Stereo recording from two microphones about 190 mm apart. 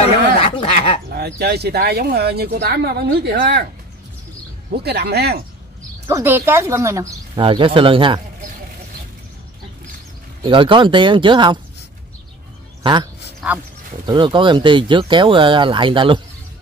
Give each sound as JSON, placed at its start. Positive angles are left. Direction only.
{"t": 0.4, "sound": "a sound", "side_deg": 30}
{"t": 1.1, "sound": "speech", "side_deg": -60}
{"t": 4.6, "sound": "speech", "side_deg": -60}
{"t": 6.0, "sound": "speech", "side_deg": -10}
{"t": 7.4, "sound": "speech", "side_deg": -25}
{"t": 10.4, "sound": "speech", "side_deg": -25}
{"t": 12.8, "sound": "speech", "side_deg": -25}